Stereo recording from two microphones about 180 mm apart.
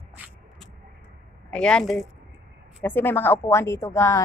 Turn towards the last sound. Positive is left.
turn(degrees=15)  # may be behind; listen again after turning